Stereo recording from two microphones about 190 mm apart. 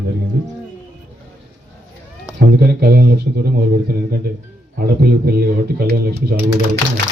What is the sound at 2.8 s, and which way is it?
Speech, 55° right (ahead or behind).